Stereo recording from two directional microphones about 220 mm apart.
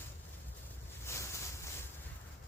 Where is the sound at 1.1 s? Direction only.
10° left (ahead or behind).